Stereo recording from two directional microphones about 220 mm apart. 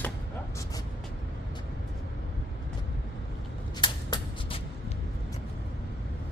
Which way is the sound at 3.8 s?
25° left (ahead or behind).